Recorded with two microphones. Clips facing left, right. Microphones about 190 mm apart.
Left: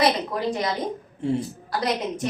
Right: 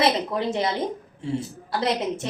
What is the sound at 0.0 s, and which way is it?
Speech, 25° right (ahead or behind).